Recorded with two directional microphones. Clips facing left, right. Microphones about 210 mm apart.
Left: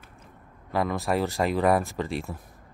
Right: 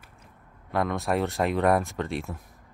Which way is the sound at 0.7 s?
Centre (ahead or behind).